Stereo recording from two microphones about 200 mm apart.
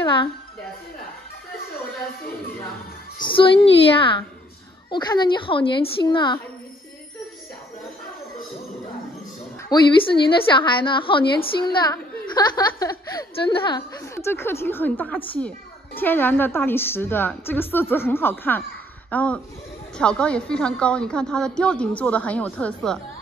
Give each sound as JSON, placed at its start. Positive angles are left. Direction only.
{"t": 0.0, "sound": "a woman's voice", "side_deg": 25}
{"t": 3.3, "sound": "a woman's voice", "side_deg": 25}
{"t": 9.7, "sound": "a woman's voice", "side_deg": 25}